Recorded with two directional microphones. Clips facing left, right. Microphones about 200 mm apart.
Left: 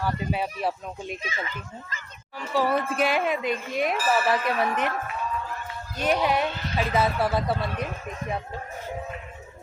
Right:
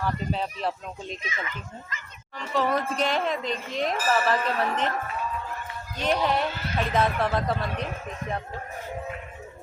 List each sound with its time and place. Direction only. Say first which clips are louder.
0.0 s a man's voice: left 1 dB; 10° left (ahead or behind)
1.2 s speech: left 1 dB; 30° left (ahead or behind)
2.4 s a man's voice: left 1 dB; 5° left (ahead or behind)
6.0 s a man's voice: left 1 dB; 10° left (ahead or behind)